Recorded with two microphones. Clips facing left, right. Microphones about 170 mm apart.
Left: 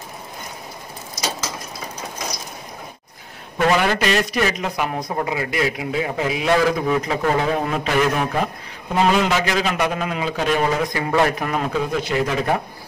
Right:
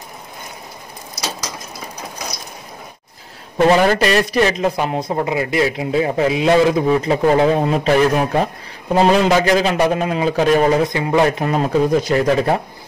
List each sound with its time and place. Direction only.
3.5 s a man's voice: 35° right (ahead or behind)
10.6 s a man's voice: 25° right (ahead or behind); by 12.5 s 40° right (ahead or behind)